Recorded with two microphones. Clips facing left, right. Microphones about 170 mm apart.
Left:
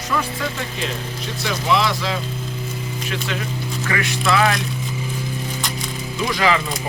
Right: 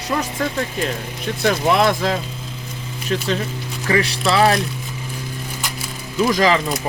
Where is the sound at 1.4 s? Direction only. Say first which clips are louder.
Right 4 dB; 50° right (ahead or behind).